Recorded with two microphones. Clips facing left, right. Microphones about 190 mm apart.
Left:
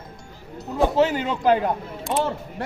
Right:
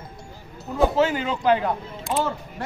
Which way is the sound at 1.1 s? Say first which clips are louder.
Left 1 dB; 40° left (ahead or behind).